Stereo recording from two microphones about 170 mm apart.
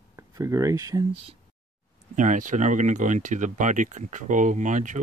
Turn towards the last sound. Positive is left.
turn(degrees=-50)  # may be behind; listen again after turning